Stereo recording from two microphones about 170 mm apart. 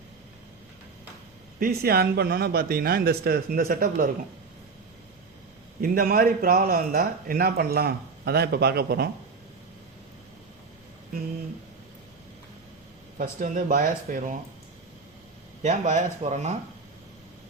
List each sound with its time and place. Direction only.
1.5 s a man's voice: 60° right (ahead or behind)
5.8 s a man's voice: 60° right (ahead or behind)
13.1 s speech: 50° right (ahead or behind)
15.6 s speech: 45° right (ahead or behind)